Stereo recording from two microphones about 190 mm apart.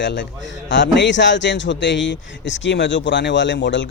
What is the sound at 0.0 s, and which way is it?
Speech, 70° left (ahead or behind).